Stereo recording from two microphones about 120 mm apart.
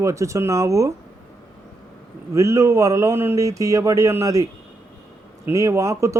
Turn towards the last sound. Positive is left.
turn(degrees=-25)  # may be behind; listen again after turning